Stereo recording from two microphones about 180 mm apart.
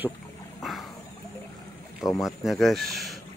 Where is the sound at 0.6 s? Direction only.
Centre (ahead or behind).